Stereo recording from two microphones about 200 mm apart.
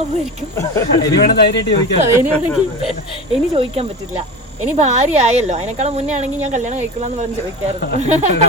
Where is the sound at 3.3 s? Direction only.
30° right (ahead or behind).